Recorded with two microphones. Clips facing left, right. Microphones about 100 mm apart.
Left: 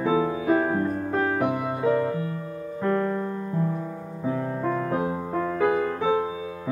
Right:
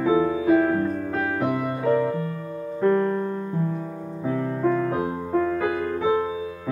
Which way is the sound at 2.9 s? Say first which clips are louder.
Right 3 dB; 15° right (ahead or behind).